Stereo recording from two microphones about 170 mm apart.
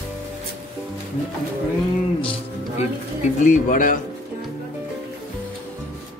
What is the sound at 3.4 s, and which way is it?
Speech, 50° left (ahead or behind).